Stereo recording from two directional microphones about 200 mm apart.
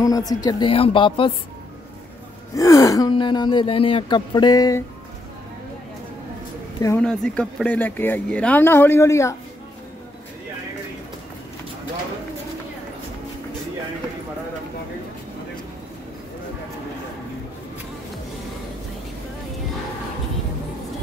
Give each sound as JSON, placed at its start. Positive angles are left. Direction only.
{"t": 0.0, "sound": "speech", "side_deg": 20}
{"t": 2.5, "sound": "speech", "side_deg": 15}
{"t": 7.0, "sound": "speech", "side_deg": 5}